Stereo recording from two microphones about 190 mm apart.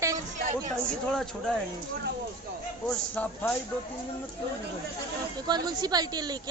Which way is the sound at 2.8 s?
5° left (ahead or behind).